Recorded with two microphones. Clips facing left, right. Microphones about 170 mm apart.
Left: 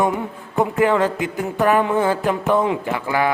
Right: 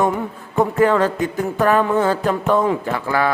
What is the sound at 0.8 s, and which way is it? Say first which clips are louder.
A woman's voice: right 1 dB; 20° left (ahead or behind).